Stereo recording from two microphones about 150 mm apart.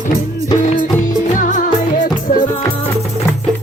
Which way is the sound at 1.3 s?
60° left (ahead or behind).